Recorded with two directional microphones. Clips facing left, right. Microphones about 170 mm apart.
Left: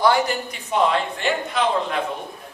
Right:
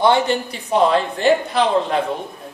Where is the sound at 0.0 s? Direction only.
25° right (ahead or behind).